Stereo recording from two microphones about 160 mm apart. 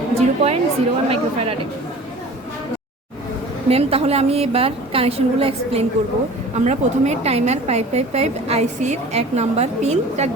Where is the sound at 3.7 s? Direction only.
40° right (ahead or behind).